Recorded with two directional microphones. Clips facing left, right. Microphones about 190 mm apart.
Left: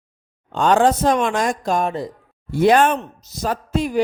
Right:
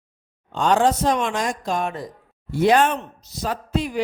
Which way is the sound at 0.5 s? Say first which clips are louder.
Left 3 dB; 55° left (ahead or behind).